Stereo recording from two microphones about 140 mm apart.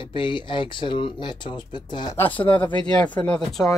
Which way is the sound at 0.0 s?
35° left (ahead or behind).